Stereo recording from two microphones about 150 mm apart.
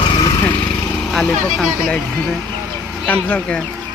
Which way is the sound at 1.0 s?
5° left (ahead or behind).